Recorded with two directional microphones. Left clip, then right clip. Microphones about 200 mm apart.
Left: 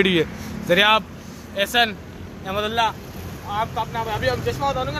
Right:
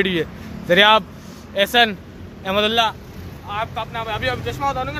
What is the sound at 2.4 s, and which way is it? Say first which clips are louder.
Speech: right 4 dB; 50° right (ahead or behind).